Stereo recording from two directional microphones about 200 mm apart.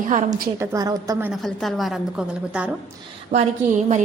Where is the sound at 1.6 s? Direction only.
Centre (ahead or behind).